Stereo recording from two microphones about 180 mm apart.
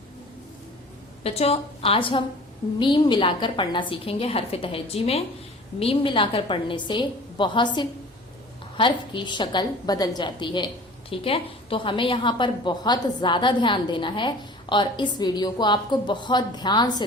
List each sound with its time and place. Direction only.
1.2 s a woman's voice: 35° left (ahead or behind)